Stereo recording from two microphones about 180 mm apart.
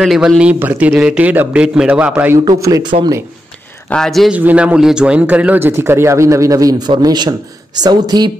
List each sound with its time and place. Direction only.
0.0 s speech: centre (ahead or behind)
2.4 s speech: 20° right (ahead or behind)
3.9 s speech: centre (ahead or behind); by 8.3 s 25° right (ahead or behind)